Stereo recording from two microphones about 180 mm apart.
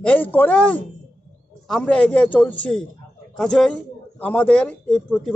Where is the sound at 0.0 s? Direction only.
10° left (ahead or behind).